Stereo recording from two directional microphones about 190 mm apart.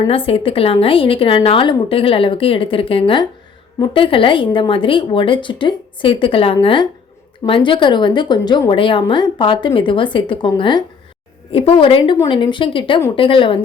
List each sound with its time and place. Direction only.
0.0 s a woman's voice: 30° left (ahead or behind)